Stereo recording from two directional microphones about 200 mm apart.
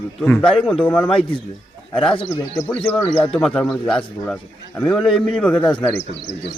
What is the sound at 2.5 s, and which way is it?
A man's voice, 5° left (ahead or behind).